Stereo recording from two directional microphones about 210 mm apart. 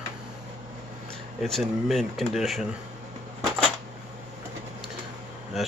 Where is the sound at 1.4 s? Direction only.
Centre (ahead or behind).